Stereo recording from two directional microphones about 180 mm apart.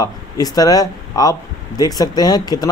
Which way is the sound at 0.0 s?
20° left (ahead or behind).